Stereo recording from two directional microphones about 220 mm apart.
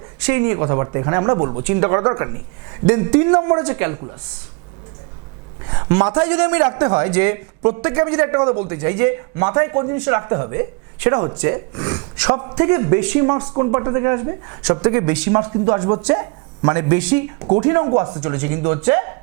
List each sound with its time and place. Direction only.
0.2 s a man's voice: 10° right (ahead or behind)
5.7 s a man's voice: 20° right (ahead or behind)
15.3 s a man's voice: 25° right (ahead or behind)
17.4 s a man's voice: 25° right (ahead or behind)